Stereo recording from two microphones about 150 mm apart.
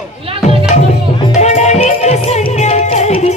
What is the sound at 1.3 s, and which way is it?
Music, 50° left (ahead or behind).